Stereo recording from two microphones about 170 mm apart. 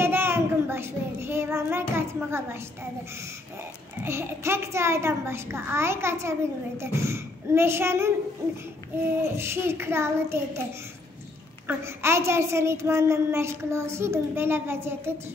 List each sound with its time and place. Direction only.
0.0 s child singing: 15° right (ahead or behind)
4.0 s a child's voice: 15° right (ahead or behind)
9.2 s a child's voice: 15° right (ahead or behind)
11.6 s a child's voice: 15° right (ahead or behind)